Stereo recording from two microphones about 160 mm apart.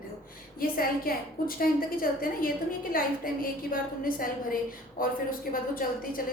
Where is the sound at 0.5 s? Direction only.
65° left (ahead or behind).